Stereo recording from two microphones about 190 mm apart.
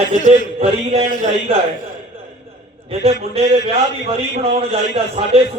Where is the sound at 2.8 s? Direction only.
30° right (ahead or behind).